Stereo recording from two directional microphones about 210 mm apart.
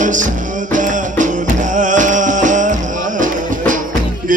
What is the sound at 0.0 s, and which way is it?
Music, 35° right (ahead or behind).